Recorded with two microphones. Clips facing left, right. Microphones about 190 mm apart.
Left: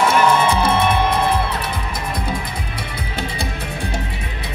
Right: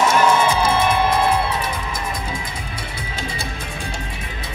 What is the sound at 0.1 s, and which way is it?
Music, 60° left (ahead or behind).